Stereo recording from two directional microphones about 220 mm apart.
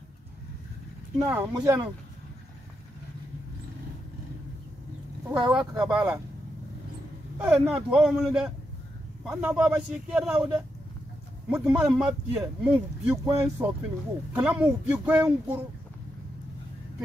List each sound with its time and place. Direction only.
1.2 s speech: 10° right (ahead or behind)
5.3 s a man's voice: 5° right (ahead or behind)
5.7 s speech: 15° right (ahead or behind)
7.3 s a man's voice: 5° right (ahead or behind)